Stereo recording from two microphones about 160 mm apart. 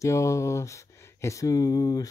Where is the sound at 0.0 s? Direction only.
20° left (ahead or behind).